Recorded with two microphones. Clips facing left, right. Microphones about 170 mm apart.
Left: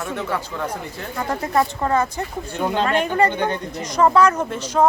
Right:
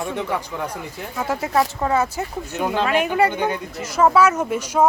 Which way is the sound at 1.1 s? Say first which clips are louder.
Even; 5° right (ahead or behind).